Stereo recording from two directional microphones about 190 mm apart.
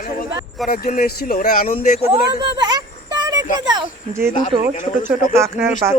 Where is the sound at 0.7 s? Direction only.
50° left (ahead or behind).